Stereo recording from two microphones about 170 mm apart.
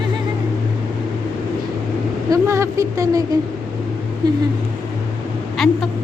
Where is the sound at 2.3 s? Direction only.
15° right (ahead or behind).